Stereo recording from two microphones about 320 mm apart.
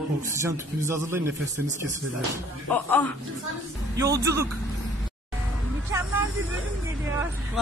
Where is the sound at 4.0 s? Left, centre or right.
Centre.